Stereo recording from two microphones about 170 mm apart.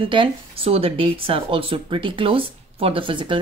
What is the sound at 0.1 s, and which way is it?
Speech, 30° right (ahead or behind).